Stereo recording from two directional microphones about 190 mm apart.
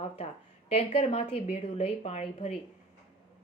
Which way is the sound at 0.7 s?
30° left (ahead or behind).